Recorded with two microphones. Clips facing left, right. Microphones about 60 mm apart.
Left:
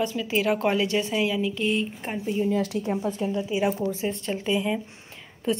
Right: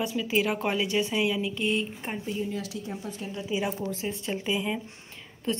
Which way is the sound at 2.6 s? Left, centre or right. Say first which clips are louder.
Left 9 dB; left.